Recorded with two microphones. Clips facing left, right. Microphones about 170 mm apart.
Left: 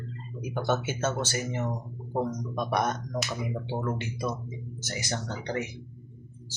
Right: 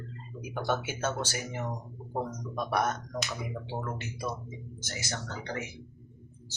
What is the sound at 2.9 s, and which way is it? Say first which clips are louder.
Speech: left 3 dB; centre (ahead or behind).